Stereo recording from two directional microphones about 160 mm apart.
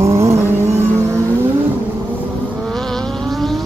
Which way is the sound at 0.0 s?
20° right (ahead or behind).